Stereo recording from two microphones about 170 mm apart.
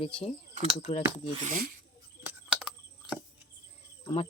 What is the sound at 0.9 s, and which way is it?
Speech, 35° left (ahead or behind).